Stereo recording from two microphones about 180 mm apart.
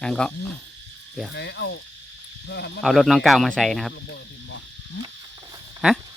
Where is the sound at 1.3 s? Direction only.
70° left (ahead or behind).